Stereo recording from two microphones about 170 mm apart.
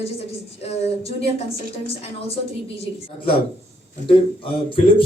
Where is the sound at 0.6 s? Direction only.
35° left (ahead or behind).